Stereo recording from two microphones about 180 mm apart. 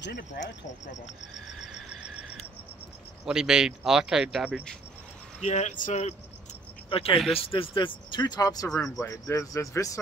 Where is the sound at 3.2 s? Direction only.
5° right (ahead or behind).